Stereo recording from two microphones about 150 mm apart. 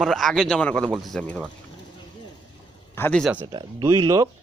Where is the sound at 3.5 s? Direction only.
30° right (ahead or behind).